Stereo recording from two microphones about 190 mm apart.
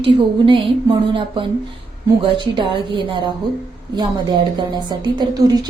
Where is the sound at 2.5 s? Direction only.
25° right (ahead or behind).